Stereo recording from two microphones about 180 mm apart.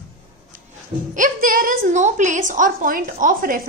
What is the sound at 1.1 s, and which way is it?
A woman's voice, 50° right (ahead or behind).